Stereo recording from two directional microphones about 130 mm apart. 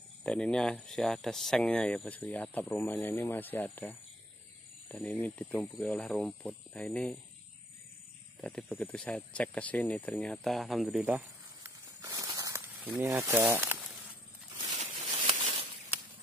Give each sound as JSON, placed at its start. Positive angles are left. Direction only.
{"t": 0.2, "sound": "speech", "side_deg": 5}
{"t": 5.0, "sound": "speech", "side_deg": 10}
{"t": 8.4, "sound": "speech", "side_deg": 10}
{"t": 11.6, "sound": "snake", "side_deg": -25}
{"t": 14.7, "sound": "a sound", "side_deg": -60}